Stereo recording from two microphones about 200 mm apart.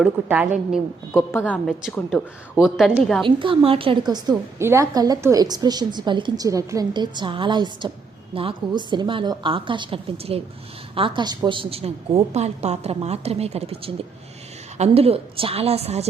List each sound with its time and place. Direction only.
0.0 s a woman's voice: 5° right (ahead or behind)
1.1 s a woman's voice: 10° left (ahead or behind)
3.2 s a woman's voice: 25° right (ahead or behind)